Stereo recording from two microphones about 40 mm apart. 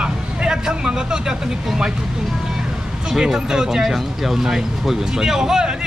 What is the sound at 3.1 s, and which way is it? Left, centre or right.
Speech, centre.